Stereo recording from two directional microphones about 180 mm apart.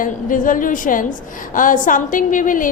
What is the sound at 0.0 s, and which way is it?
A woman's voice, 50° left (ahead or behind).